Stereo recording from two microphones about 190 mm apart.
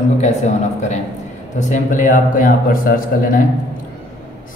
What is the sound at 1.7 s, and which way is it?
A man's voice, 40° left (ahead or behind).